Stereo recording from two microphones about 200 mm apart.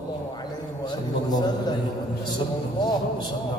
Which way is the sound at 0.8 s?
20° left (ahead or behind).